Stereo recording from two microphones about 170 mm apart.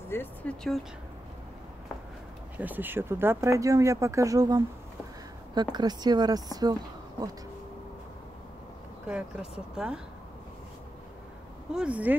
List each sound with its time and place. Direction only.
0.1 s speech: 10° left (ahead or behind)
2.5 s speech: 10° right (ahead or behind)
9.0 s speech: 5° right (ahead or behind)
11.7 s speech: 5° right (ahead or behind)